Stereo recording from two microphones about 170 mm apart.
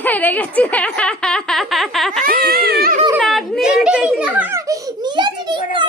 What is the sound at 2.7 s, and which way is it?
Speech, 65° right (ahead or behind).